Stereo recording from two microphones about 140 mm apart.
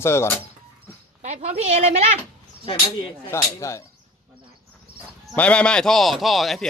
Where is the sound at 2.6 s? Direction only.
40° left (ahead or behind).